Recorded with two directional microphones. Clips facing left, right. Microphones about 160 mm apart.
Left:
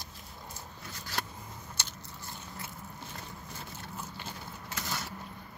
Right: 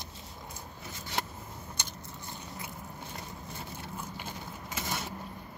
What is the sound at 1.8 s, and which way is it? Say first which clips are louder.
Biting: right 2 dB; 15° right (ahead or behind).